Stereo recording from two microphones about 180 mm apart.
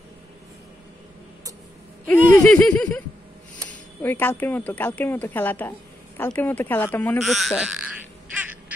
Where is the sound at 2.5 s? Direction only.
5° left (ahead or behind).